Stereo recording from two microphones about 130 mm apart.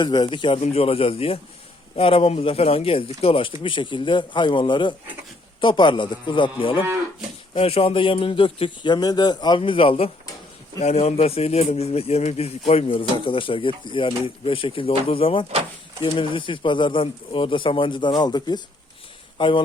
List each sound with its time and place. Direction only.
0.0 s speech: 35° left (ahead or behind)
0.6 s a man's voice: 50° left (ahead or behind)